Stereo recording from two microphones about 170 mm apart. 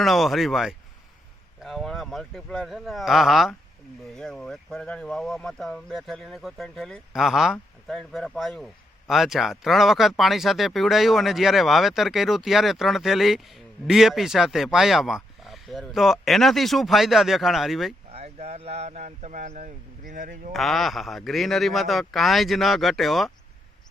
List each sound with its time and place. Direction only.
0.0 s speech: centre (ahead or behind)
18.1 s speech: 35° right (ahead or behind); by 20.5 s 55° right (ahead or behind)
20.5 s speech: centre (ahead or behind)